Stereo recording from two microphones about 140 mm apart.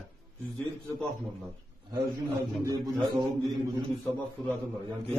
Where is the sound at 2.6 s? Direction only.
30° right (ahead or behind).